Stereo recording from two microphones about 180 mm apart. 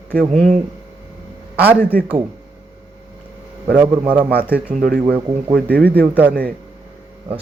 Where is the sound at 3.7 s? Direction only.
10° right (ahead or behind).